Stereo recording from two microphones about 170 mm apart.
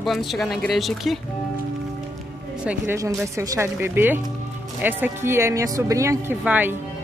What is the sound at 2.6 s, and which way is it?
Speech, 15° right (ahead or behind).